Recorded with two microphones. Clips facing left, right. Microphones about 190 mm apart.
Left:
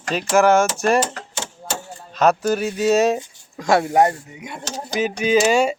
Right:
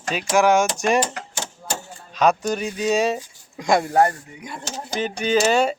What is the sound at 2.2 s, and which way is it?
Speech, 5° left (ahead or behind).